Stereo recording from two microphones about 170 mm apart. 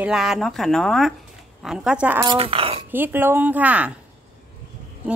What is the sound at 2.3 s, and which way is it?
Speech, 35° right (ahead or behind).